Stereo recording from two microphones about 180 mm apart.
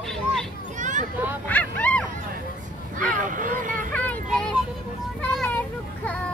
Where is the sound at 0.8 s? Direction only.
45° right (ahead or behind).